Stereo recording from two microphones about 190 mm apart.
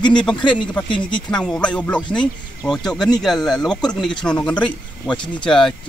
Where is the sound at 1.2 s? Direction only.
5° left (ahead or behind).